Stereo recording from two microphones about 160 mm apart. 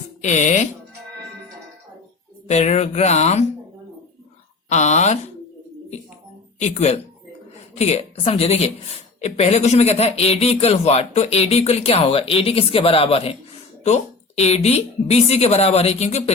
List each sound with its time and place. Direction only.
0.2 s speech: 50° left (ahead or behind)
2.5 s speech: 45° left (ahead or behind)
4.7 s speech: 45° left (ahead or behind)
6.6 s a woman's voice: 45° left (ahead or behind)